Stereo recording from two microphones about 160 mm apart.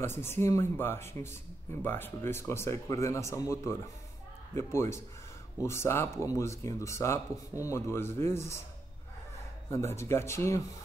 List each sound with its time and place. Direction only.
0.0 s speech: 15° left (ahead or behind)
9.9 s speech: 15° left (ahead or behind)